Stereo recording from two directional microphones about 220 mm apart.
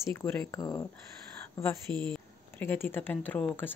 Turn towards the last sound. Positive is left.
turn(degrees=10)  # may be behind; listen again after turning